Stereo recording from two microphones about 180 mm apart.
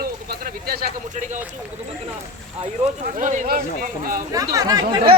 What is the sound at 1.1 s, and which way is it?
Speech, 40° right (ahead or behind).